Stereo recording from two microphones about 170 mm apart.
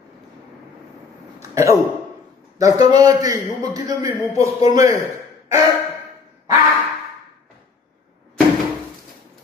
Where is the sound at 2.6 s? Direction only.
20° right (ahead or behind).